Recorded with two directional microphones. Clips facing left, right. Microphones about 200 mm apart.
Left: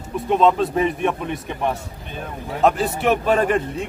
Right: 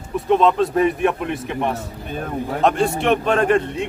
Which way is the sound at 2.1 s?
50° right (ahead or behind).